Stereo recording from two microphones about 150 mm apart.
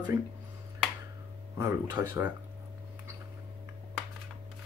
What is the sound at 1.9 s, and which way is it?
Speech, 20° right (ahead or behind).